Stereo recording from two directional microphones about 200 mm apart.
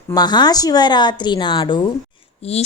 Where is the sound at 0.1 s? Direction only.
20° left (ahead or behind).